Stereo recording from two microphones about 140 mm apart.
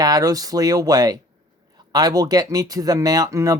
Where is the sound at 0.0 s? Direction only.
25° right (ahead or behind).